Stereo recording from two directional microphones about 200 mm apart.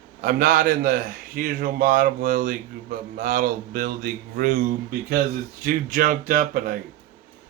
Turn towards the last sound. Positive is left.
turn(degrees=-45)  # may be behind; listen again after turning